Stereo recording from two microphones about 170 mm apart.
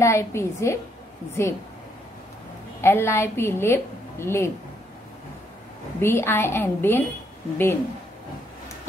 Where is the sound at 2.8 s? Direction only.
15° left (ahead or behind).